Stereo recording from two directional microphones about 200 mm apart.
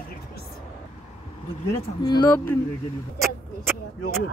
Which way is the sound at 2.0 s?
20° left (ahead or behind).